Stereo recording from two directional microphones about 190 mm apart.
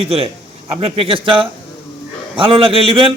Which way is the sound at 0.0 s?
30° right (ahead or behind).